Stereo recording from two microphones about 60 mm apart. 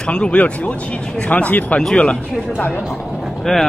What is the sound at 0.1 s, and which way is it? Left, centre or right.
Speech, centre.